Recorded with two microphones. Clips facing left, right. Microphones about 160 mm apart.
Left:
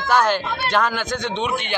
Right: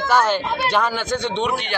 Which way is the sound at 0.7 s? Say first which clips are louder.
Left 1 dB; 10° right (ahead or behind).